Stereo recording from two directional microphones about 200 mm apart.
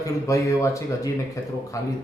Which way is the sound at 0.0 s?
15° left (ahead or behind).